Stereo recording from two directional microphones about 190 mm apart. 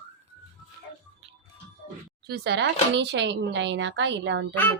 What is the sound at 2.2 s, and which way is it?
A woman's voice, 60° right (ahead or behind).